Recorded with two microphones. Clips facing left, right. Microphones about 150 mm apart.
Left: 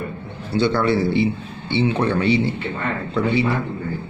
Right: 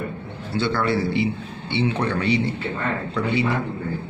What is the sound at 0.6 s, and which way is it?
Speech, 20° left (ahead or behind).